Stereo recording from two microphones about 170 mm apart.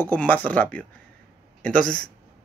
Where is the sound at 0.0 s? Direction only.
10° left (ahead or behind).